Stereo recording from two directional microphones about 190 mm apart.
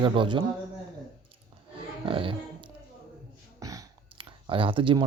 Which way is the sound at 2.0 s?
25° right (ahead or behind).